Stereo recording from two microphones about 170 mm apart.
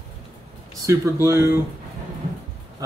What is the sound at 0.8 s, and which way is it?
Speech, 15° right (ahead or behind).